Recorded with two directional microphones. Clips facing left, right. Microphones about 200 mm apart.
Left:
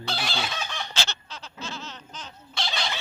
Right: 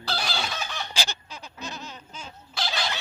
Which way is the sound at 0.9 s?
10° right (ahead or behind).